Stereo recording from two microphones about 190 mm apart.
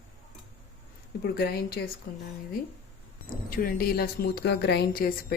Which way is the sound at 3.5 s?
50° left (ahead or behind).